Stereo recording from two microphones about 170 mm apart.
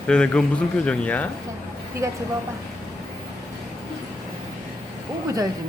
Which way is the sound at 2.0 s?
20° right (ahead or behind).